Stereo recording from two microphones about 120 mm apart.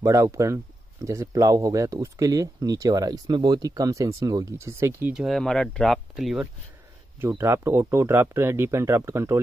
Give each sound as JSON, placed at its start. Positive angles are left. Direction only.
{"t": 0.0, "sound": "speech", "side_deg": -25}
{"t": 4.6, "sound": "speech", "side_deg": -20}
{"t": 5.1, "sound": "speech", "side_deg": 0}
{"t": 7.2, "sound": "speech", "side_deg": -20}